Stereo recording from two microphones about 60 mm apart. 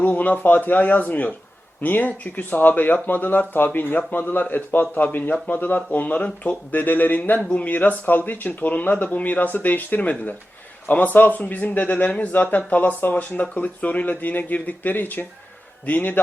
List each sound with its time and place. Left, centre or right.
0.0 s speech: left